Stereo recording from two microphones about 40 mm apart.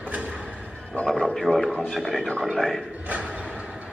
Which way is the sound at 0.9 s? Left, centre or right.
Left.